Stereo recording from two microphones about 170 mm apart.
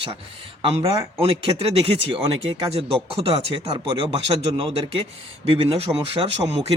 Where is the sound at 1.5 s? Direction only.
35° right (ahead or behind).